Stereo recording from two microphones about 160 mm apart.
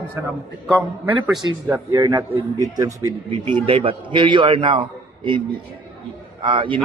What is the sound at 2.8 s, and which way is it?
A man's voice, 25° right (ahead or behind).